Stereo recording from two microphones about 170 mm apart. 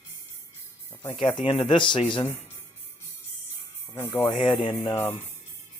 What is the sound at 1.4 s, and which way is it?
Speech, 30° left (ahead or behind).